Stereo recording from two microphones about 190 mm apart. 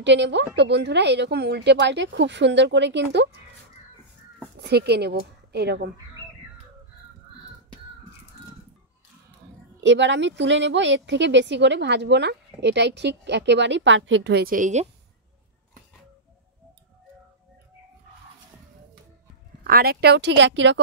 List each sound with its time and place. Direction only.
0.0 s a woman's voice: 70° right (ahead or behind)
4.6 s speech: 60° right (ahead or behind)
9.8 s a woman's voice: 70° right (ahead or behind); by 14.9 s 40° right (ahead or behind)
19.6 s speech: 55° right (ahead or behind); by 20.8 s 75° right (ahead or behind)